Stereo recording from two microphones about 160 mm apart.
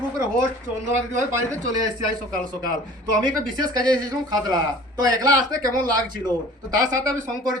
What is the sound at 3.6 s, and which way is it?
A man's voice, 25° right (ahead or behind).